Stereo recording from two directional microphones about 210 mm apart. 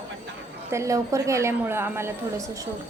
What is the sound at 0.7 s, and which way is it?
A woman's voice, 15° right (ahead or behind).